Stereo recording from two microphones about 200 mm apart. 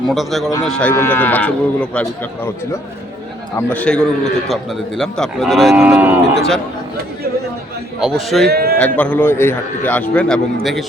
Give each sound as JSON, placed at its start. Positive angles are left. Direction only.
{"t": 0.1, "sound": "a man's voice", "side_deg": 0}
{"t": 3.7, "sound": "a man's voice", "side_deg": 5}
{"t": 8.0, "sound": "a man's voice", "side_deg": 0}
{"t": 8.4, "sound": "a man's voice", "side_deg": -50}
{"t": 9.0, "sound": "a man's voice", "side_deg": 10}